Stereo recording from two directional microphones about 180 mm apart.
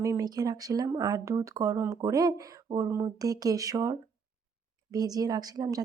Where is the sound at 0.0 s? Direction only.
20° right (ahead or behind).